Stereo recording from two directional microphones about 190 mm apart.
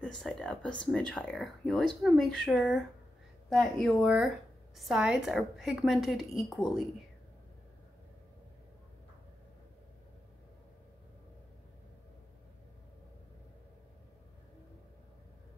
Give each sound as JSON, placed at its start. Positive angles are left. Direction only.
{"t": 0.0, "sound": "speech", "side_deg": 5}